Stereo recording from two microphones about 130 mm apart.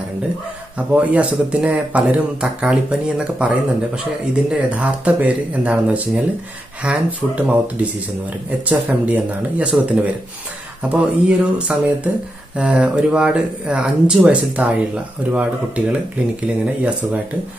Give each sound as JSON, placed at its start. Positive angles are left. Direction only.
{"t": 0.7, "sound": "speech", "side_deg": -10}